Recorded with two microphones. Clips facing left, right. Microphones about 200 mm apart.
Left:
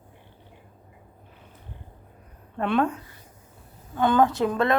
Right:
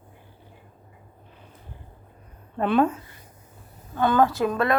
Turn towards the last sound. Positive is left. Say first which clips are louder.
# even
turn(degrees=25)  # may be behind; listen again after turning